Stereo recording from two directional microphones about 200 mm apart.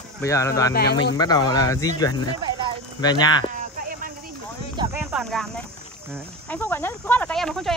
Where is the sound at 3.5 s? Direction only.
45° right (ahead or behind).